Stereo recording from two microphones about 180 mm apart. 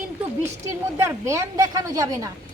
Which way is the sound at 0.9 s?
15° right (ahead or behind).